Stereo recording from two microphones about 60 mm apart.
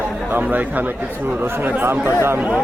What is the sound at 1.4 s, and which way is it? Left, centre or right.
Speech, right.